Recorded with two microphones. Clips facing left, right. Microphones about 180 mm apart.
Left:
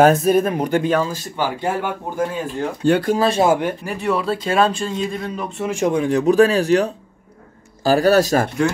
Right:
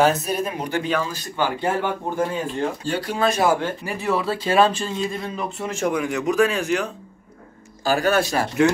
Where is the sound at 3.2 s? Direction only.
25° left (ahead or behind).